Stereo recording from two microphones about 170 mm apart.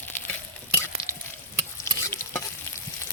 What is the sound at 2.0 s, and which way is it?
Stir, 15° left (ahead or behind).